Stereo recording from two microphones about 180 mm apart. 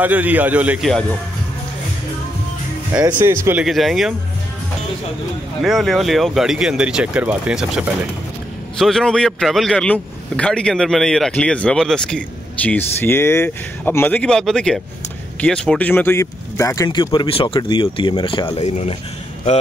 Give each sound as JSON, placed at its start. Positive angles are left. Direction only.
{"t": 0.0, "sound": "a man's voice", "side_deg": -10}
{"t": 3.1, "sound": "a man's voice", "side_deg": -10}
{"t": 3.6, "sound": "a man's voice", "side_deg": 0}
{"t": 5.6, "sound": "a man's voice", "side_deg": 0}